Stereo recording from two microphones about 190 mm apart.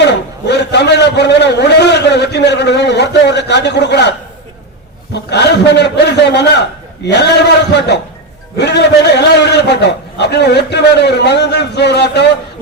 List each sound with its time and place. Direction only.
0.0 s a man's voice: 65° left (ahead or behind)
5.1 s a man's voice: 65° left (ahead or behind)